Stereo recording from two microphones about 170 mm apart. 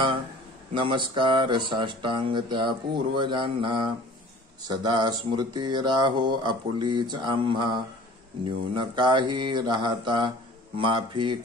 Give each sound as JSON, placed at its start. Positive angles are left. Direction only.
{"t": 0.7, "sound": "speech", "side_deg": -30}